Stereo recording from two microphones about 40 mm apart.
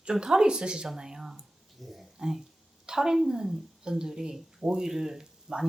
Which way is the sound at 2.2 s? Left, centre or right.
Centre.